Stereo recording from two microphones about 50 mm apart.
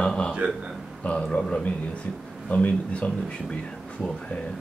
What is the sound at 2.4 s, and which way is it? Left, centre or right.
A man's voice, left.